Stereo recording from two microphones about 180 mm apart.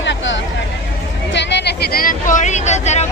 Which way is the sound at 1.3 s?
75° left (ahead or behind).